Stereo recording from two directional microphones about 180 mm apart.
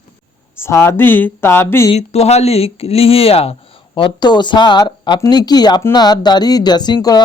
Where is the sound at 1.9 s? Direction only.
35° left (ahead or behind).